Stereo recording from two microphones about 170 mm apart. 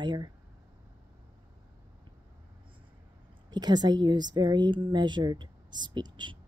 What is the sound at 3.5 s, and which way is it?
A woman's voice, 25° right (ahead or behind).